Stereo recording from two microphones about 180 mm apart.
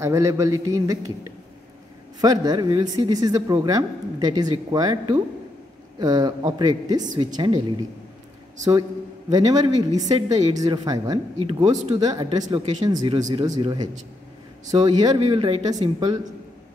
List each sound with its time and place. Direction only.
0.0 s speech: 15° right (ahead or behind)
2.1 s speech: 20° right (ahead or behind)
8.5 s speech: 20° right (ahead or behind)